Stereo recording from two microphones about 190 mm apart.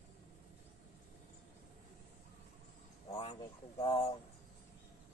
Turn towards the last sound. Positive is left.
turn(degrees=30)  # may be behind; listen again after turning